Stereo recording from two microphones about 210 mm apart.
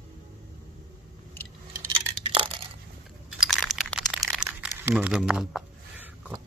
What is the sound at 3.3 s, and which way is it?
Crumpling, centre (ahead or behind).